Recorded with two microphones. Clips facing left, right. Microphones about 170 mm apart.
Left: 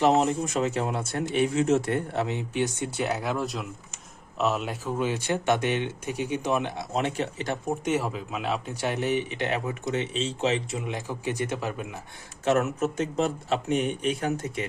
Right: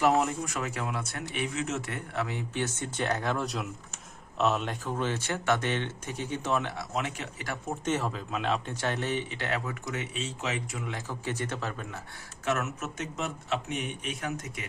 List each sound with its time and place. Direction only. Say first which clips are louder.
0.0 s speech: left 4 dB; 25° left (ahead or behind)
2.5 s speech: left 5 dB; 15° left (ahead or behind)
6.9 s speech: left 8 dB; 30° left (ahead or behind)
7.9 s speech: left 1 dB; 10° left (ahead or behind)
12.5 s speech: left 7 dB; 30° left (ahead or behind)